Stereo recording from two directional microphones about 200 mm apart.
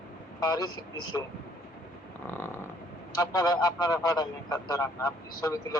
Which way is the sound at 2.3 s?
10° left (ahead or behind).